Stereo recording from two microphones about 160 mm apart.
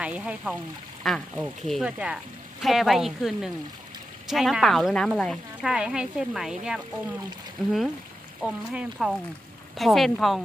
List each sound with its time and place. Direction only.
0.0 s speech: 10° right (ahead or behind)